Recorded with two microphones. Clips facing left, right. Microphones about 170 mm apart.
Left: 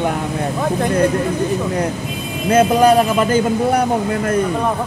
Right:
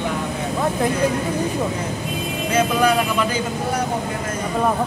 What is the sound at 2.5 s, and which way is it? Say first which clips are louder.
A man's voice: left 7 dB; 50° left (ahead or behind).